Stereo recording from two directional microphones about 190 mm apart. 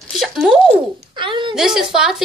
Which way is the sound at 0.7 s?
25° right (ahead or behind).